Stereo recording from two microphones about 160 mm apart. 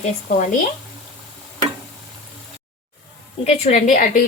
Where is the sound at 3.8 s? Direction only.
60° left (ahead or behind).